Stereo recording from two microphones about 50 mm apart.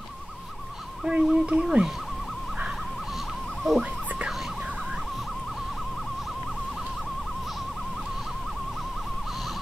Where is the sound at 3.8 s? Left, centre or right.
Right.